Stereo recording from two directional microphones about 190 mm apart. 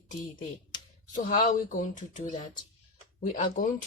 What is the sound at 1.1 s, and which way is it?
Speech, 45° left (ahead or behind).